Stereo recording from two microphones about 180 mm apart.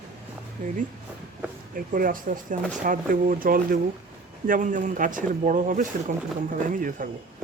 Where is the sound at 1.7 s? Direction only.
50° right (ahead or behind).